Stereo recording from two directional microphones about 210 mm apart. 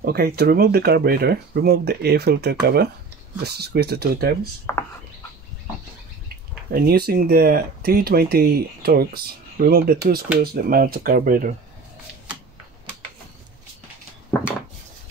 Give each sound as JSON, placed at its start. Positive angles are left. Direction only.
{"t": 0.0, "sound": "speech", "side_deg": -45}
{"t": 4.7, "sound": "speech", "side_deg": 10}
{"t": 6.2, "sound": "speech", "side_deg": -45}